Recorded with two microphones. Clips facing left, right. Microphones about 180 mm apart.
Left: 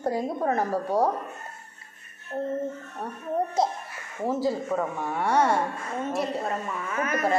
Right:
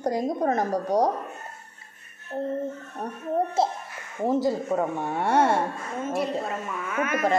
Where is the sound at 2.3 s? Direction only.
10° right (ahead or behind).